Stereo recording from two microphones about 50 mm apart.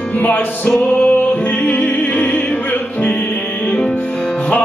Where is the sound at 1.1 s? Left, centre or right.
Left.